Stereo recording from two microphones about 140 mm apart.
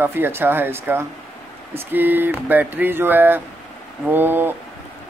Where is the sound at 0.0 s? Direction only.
15° right (ahead or behind).